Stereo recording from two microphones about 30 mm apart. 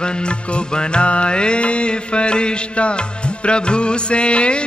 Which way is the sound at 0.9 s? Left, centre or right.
Left.